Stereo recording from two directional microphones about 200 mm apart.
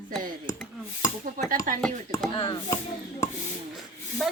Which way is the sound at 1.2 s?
45° right (ahead or behind).